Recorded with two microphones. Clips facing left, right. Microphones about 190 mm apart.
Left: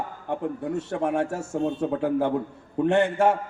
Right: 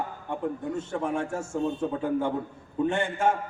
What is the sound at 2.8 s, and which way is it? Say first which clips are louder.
Speech: left 6 dB; 65° left (ahead or behind).